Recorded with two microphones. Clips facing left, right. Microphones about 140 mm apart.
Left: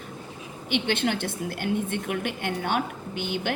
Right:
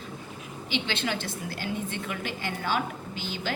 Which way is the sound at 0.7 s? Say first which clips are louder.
Left 5 dB; 55° left (ahead or behind).